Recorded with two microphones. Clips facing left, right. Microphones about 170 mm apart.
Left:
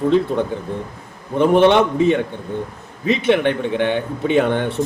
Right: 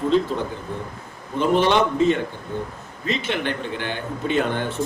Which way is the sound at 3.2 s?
60° left (ahead or behind).